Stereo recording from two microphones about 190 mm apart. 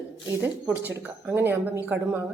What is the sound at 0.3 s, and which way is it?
Speech, 10° right (ahead or behind).